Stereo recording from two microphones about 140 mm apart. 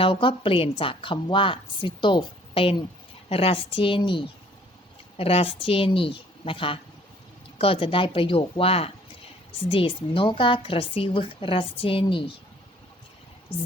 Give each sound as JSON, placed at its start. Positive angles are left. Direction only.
{"t": 0.0, "sound": "a woman's voice", "side_deg": 35}